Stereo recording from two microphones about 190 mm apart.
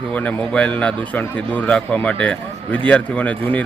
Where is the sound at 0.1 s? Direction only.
10° left (ahead or behind).